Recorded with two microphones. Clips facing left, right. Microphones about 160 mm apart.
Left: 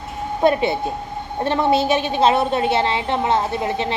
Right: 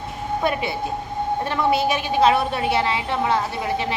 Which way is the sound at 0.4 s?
25° left (ahead or behind).